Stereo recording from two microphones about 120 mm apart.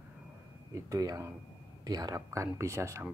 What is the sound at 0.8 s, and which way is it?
Speech, 30° right (ahead or behind).